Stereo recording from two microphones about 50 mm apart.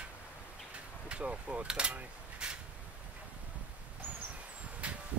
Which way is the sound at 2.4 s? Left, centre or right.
Centre.